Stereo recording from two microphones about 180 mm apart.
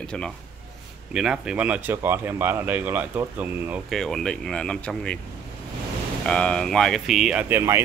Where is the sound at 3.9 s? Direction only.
Centre (ahead or behind).